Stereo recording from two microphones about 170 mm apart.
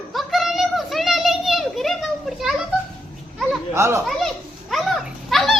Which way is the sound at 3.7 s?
15° right (ahead or behind).